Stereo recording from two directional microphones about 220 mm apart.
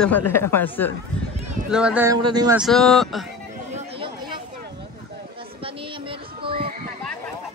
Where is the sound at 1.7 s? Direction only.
5° right (ahead or behind).